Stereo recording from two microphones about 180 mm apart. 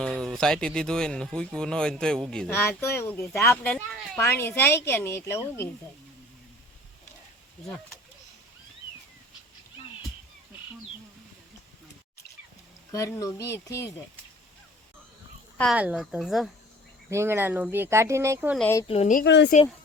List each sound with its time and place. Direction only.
0.0 s speech: 5° left (ahead or behind)
12.9 s speech: 15° left (ahead or behind)
15.7 s speech: 5° right (ahead or behind)
17.1 s speech: 15° right (ahead or behind)
18.9 s a woman's voice: 35° left (ahead or behind)
19.2 s speech: 75° left (ahead or behind)